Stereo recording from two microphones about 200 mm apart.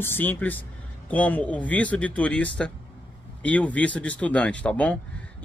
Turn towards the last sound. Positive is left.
turn(degrees=5)  # may be behind; listen again after turning